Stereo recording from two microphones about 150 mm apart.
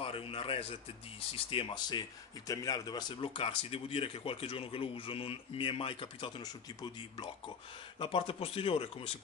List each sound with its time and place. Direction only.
0.0 s a man's voice: 40° left (ahead or behind)